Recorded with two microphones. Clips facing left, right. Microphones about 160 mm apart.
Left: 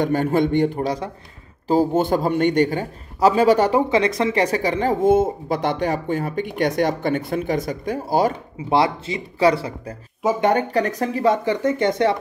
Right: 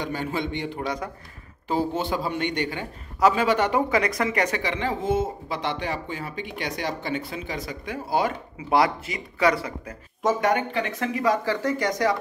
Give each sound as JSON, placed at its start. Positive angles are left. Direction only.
{"t": 0.0, "sound": "a man's voice", "side_deg": 50}
{"t": 0.8, "sound": "speech", "side_deg": 30}
{"t": 1.7, "sound": "a man's voice", "side_deg": 45}
{"t": 8.6, "sound": "speech", "side_deg": 25}
{"t": 11.2, "sound": "speech", "side_deg": 20}